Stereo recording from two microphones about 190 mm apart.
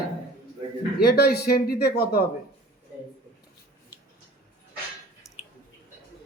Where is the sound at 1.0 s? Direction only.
55° left (ahead or behind).